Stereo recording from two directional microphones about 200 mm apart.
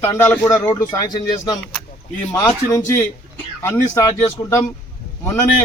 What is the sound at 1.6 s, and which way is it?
A man's voice, 5° left (ahead or behind).